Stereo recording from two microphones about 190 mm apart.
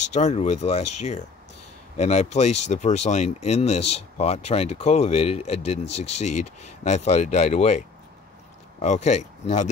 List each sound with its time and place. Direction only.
0.0 s speech: 35° left (ahead or behind)